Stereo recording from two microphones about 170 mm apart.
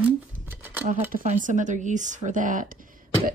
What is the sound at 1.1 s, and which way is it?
A woman's voice, 50° right (ahead or behind).